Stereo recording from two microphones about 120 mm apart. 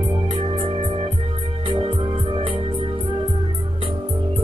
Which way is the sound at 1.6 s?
45° right (ahead or behind).